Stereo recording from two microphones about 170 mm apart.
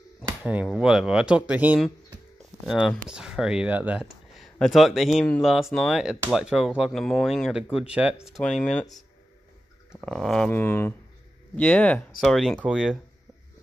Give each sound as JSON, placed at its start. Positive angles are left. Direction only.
{"t": 0.4, "sound": "speech", "side_deg": -10}
{"t": 8.6, "sound": "speech", "side_deg": 5}